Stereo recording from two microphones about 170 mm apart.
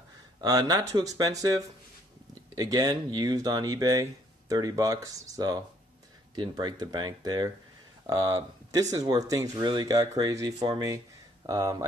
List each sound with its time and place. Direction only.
0.4 s speech: 20° right (ahead or behind)